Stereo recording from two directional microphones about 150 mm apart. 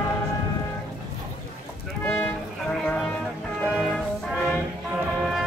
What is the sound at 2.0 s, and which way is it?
Music, 10° left (ahead or behind).